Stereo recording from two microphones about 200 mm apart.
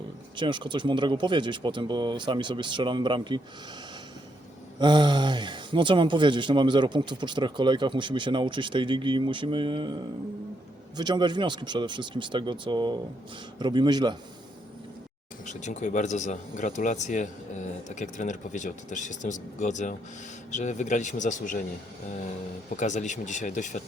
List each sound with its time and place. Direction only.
0.3 s speech: 25° right (ahead or behind)
4.8 s speech: 20° right (ahead or behind)
10.9 s speech: 20° right (ahead or behind)
15.4 s speech: 35° left (ahead or behind)
22.8 s speech: 35° left (ahead or behind)